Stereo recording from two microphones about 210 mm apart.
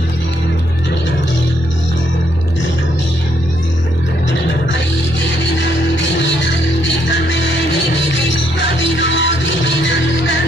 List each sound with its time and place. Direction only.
6.8 s music: 60° left (ahead or behind)
8.9 s music: 60° left (ahead or behind)